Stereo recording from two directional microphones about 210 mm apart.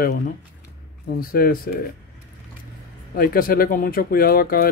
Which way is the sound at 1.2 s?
45° left (ahead or behind).